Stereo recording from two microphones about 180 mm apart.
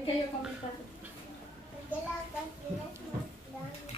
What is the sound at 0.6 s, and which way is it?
Speech, 45° left (ahead or behind).